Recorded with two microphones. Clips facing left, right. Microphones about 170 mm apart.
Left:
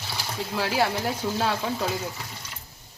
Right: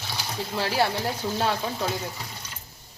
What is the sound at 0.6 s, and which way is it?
Speech, centre (ahead or behind).